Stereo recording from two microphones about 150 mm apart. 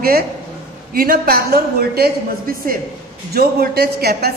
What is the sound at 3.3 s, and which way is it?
A woman's voice, 90° right.